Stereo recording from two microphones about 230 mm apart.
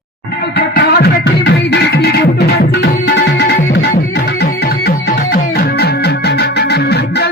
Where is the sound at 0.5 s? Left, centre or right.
Left.